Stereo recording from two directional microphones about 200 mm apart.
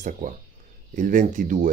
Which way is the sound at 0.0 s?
40° right (ahead or behind).